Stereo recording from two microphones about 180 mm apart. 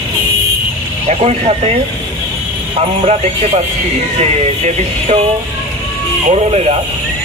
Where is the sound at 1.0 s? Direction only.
35° right (ahead or behind).